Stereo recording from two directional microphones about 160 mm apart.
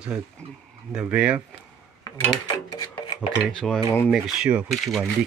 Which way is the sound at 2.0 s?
25° left (ahead or behind).